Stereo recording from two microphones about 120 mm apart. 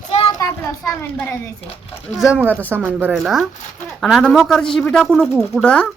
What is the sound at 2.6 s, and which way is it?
Speech, 15° right (ahead or behind).